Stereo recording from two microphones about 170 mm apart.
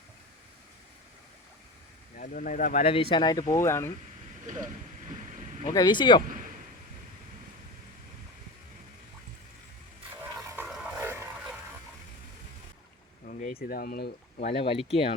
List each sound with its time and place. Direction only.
2.1 s speech: 55° left (ahead or behind)
2.8 s speech: 35° left (ahead or behind); by 3.9 s 15° left (ahead or behind)
4.4 s vehicle: 50° right (ahead or behind)
5.6 s speech: 25° left (ahead or behind)
10.4 s a sound: 10° right (ahead or behind)
13.2 s a sound: 60° left (ahead or behind)
14.4 s speech: 30° left (ahead or behind)